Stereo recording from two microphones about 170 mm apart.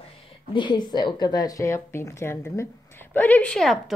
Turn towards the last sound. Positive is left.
turn(degrees=0)  # may be behind; listen again after turning